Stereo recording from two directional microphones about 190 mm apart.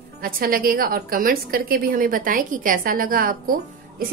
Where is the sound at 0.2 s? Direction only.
50° right (ahead or behind).